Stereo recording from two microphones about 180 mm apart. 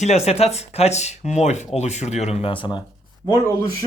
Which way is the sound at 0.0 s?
35° left (ahead or behind).